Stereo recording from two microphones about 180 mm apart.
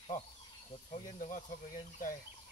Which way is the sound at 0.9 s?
45° left (ahead or behind).